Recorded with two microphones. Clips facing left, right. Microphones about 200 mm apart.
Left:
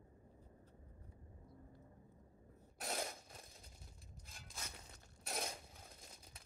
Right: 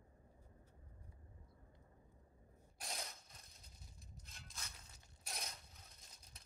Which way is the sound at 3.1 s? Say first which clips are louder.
Left 8 dB; 50° left (ahead or behind).